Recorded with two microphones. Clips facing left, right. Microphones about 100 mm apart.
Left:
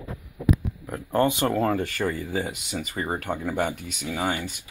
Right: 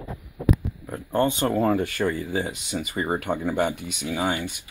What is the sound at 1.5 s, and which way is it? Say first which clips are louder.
Speech: right 2 dB; 5° right (ahead or behind).